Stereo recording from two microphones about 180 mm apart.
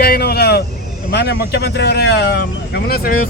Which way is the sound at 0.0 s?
60° left (ahead or behind).